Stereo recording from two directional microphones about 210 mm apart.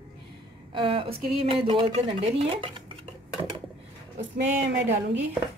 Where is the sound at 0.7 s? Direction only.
25° right (ahead or behind).